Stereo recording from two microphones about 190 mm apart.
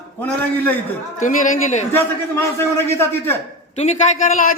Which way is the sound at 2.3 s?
15° left (ahead or behind).